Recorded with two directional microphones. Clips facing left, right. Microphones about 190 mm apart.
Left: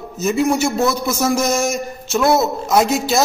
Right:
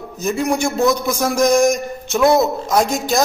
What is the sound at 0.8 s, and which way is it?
Speech, 15° right (ahead or behind).